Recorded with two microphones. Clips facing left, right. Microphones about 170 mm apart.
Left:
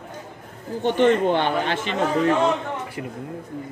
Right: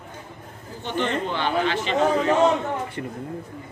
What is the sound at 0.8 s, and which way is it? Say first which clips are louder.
A man's voice: left 8 dB; 55° left (ahead or behind).